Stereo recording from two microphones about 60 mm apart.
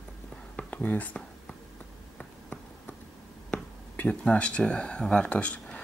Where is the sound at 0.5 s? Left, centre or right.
Left.